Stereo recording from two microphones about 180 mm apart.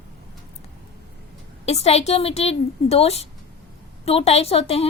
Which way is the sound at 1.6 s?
35° left (ahead or behind).